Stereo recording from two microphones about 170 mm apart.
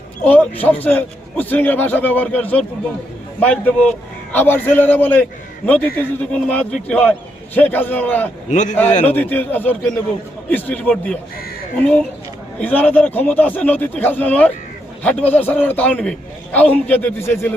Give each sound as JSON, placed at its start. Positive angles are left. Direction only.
{"t": 0.6, "sound": "a man's voice", "side_deg": 10}
{"t": 8.4, "sound": "a man's voice", "side_deg": 45}
{"t": 9.0, "sound": "a man's voice", "side_deg": 10}